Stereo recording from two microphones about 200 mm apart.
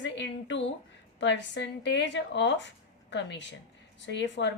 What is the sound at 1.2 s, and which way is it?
A woman's voice, 65° left (ahead or behind).